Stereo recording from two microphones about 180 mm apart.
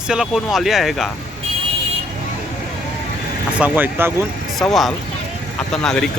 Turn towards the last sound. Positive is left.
turn(degrees=5)  # may be behind; listen again after turning